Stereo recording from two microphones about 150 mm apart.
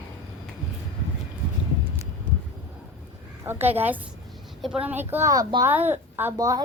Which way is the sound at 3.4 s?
15° right (ahead or behind).